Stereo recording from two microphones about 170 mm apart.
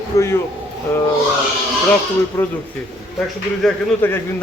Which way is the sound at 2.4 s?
15° left (ahead or behind).